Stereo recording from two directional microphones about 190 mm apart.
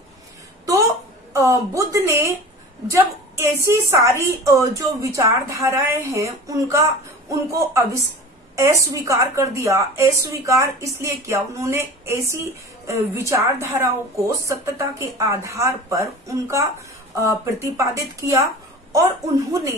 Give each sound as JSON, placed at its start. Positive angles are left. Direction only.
{"t": 1.3, "sound": "a woman's voice", "side_deg": -15}